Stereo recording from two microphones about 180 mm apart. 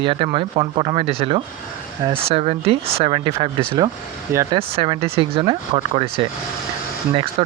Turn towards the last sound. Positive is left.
turn(degrees=-30)  # may be behind; listen again after turning